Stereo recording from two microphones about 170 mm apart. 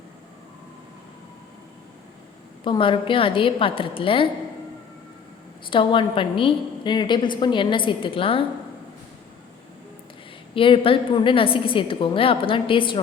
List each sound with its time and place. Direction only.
2.6 s a woman's voice: 30° left (ahead or behind)
5.7 s a woman's voice: 30° left (ahead or behind)
10.5 s a woman's voice: 30° left (ahead or behind)